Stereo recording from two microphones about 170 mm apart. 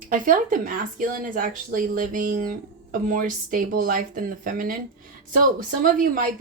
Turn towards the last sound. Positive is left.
turn(degrees=-55)  # may be behind; listen again after turning